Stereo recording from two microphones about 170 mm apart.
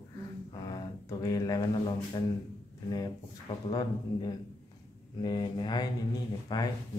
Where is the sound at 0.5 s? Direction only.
25° left (ahead or behind).